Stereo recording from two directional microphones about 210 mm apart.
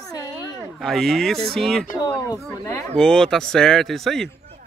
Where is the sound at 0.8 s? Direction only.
Centre (ahead or behind).